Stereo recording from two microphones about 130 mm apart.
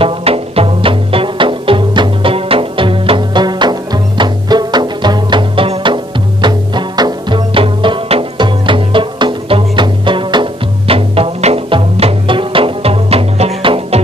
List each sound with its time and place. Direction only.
0.0 s music: 45° right (ahead or behind)